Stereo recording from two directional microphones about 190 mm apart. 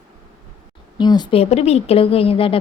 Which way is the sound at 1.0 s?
20° left (ahead or behind).